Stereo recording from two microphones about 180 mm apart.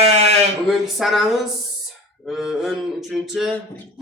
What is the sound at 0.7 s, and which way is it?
Speech, centre (ahead or behind).